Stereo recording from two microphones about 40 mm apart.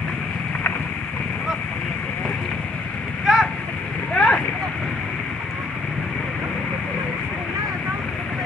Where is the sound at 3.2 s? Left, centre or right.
Centre.